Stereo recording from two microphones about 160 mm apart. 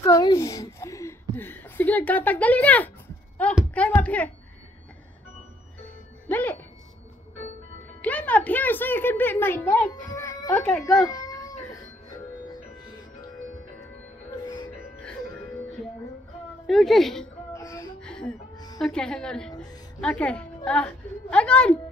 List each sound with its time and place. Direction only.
0.0 s a sound: 25° left (ahead or behind)
1.3 s speech: 10° left (ahead or behind)
6.2 s speech: 10° left (ahead or behind)
8.0 s speech: 10° left (ahead or behind)
10.0 s music: 20° left (ahead or behind)
10.6 s a woman's voice: centre (ahead or behind)
11.1 s cat: 20° left (ahead or behind)
16.6 s a woman's voice: centre (ahead or behind)
17.5 s music: 20° left (ahead or behind)
18.0 s music: 5° left (ahead or behind)
18.8 s a woman's voice: 5° left (ahead or behind)